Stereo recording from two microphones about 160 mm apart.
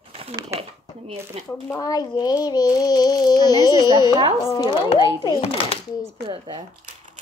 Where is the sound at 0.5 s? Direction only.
40° right (ahead or behind).